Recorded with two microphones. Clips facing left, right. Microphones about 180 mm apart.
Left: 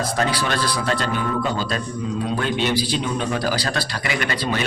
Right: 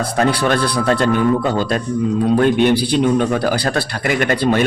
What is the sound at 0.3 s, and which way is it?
A man's voice, 55° right (ahead or behind).